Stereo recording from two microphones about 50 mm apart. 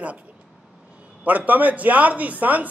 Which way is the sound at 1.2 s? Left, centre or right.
Right.